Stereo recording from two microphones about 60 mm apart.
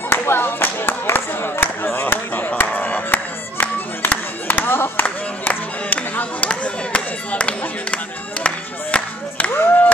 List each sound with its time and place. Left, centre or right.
0.1 s a sound: left
5.0 s music: left
6.5 s chop: left
9.5 s music: left